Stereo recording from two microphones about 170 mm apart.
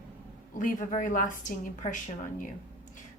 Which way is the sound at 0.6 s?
50° left (ahead or behind).